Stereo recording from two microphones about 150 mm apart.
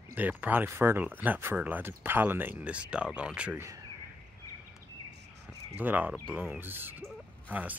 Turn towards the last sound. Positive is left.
turn(degrees=-10)  # may be behind; listen again after turning